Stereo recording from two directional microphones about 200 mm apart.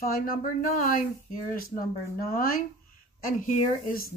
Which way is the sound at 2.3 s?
45° left (ahead or behind).